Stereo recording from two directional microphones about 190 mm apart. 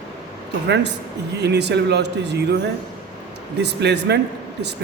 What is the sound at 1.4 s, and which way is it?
A man's voice, 60° right (ahead or behind).